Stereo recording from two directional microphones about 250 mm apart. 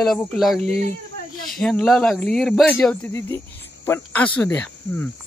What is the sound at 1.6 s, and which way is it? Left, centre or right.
Speech, centre.